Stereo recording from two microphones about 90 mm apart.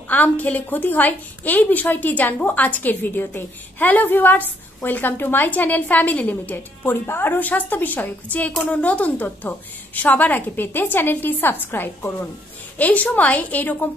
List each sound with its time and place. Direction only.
0.1 s a woman's voice: 20° left (ahead or behind)